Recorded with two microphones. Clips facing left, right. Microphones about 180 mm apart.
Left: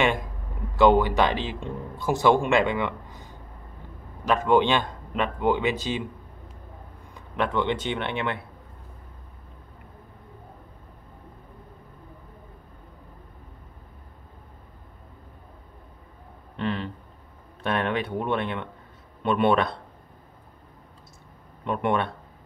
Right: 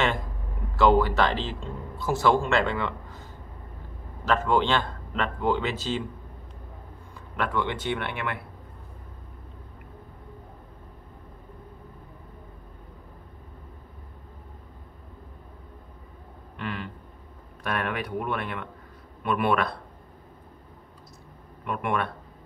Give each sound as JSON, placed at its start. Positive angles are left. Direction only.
{"t": 0.7, "sound": "speech", "side_deg": 20}
{"t": 7.3, "sound": "speech", "side_deg": 20}
{"t": 16.5, "sound": "a sound", "side_deg": 30}
{"t": 17.6, "sound": "speech", "side_deg": 25}
{"t": 21.6, "sound": "speech", "side_deg": 25}